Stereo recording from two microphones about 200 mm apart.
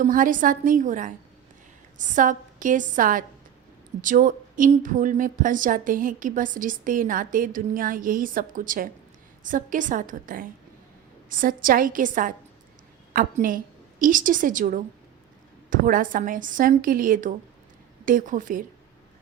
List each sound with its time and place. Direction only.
0.0 s a woman's voice: 40° right (ahead or behind)